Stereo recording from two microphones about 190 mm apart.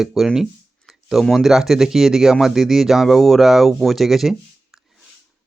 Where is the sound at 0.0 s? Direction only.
Centre (ahead or behind).